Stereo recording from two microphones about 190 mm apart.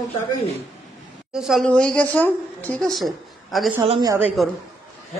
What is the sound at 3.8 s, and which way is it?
Speech, 25° right (ahead or behind).